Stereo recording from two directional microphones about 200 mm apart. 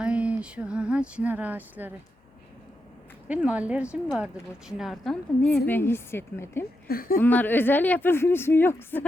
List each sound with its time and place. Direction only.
0.0 s speech: 5° right (ahead or behind)
3.2 s a woman's voice: 5° right (ahead or behind); by 6.7 s 10° left (ahead or behind)
6.8 s speech: 45° left (ahead or behind)
7.2 s a woman's voice: 10° left (ahead or behind)